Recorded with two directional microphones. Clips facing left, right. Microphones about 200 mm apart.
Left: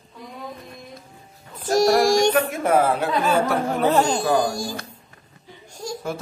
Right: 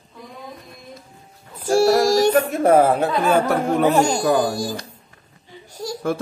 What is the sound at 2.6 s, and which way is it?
Speech, 45° right (ahead or behind).